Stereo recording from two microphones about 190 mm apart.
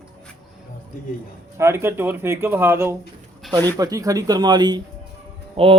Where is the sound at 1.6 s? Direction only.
15° right (ahead or behind).